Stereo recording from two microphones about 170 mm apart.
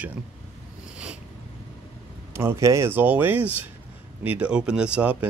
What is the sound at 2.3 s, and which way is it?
Speech, 15° right (ahead or behind).